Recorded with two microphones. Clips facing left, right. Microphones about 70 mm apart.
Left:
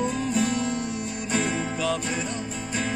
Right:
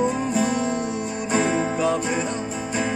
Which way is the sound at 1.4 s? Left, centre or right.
Right.